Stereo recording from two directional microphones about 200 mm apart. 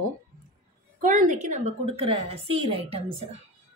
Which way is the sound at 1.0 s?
40° right (ahead or behind).